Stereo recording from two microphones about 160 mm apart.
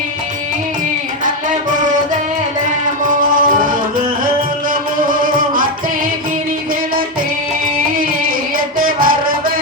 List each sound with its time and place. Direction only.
3.1 s music: 55° right (ahead or behind)
8.5 s music: 60° right (ahead or behind)